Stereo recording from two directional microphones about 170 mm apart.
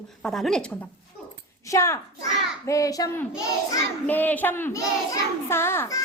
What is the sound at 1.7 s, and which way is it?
A child's voice, 15° left (ahead or behind).